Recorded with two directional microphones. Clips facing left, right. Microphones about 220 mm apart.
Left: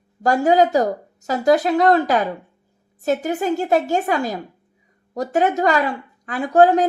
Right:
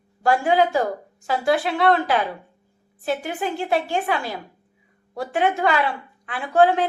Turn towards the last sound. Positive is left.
turn(degrees=40)  # may be behind; listen again after turning